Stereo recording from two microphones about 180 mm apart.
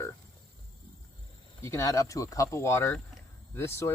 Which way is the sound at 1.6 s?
15° left (ahead or behind).